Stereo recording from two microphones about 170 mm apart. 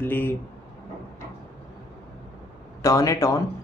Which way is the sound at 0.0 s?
10° left (ahead or behind).